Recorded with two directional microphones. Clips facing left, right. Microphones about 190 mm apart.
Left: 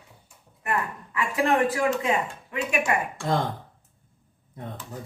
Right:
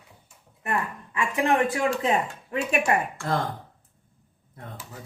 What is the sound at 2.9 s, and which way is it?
Speech, 30° right (ahead or behind).